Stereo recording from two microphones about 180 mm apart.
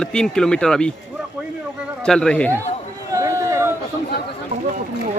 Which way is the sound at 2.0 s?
5° left (ahead or behind).